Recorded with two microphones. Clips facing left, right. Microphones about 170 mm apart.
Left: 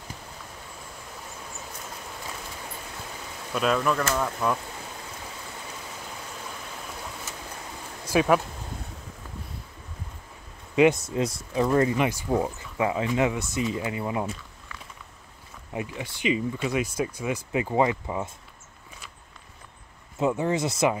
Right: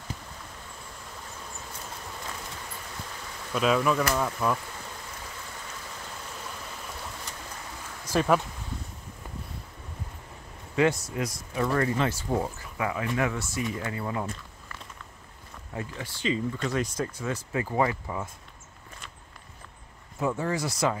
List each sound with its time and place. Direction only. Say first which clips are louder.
3.5 s speech: even; centre (ahead or behind)
8.1 s speech: left 2 dB; 5° left (ahead or behind)
10.8 s speech: left 5 dB; 20° left (ahead or behind)
15.7 s speech: left 3 dB; 15° left (ahead or behind)
20.2 s speech: left 4 dB; 20° left (ahead or behind)